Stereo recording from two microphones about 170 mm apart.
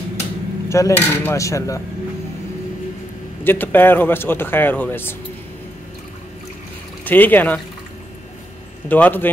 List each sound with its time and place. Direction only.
0.7 s speech: 15° left (ahead or behind)
3.4 s speech: 10° left (ahead or behind)
7.1 s speech: 10° left (ahead or behind)
8.8 s speech: 10° left (ahead or behind)